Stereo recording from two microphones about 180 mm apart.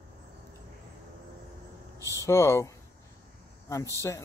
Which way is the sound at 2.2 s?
15° left (ahead or behind).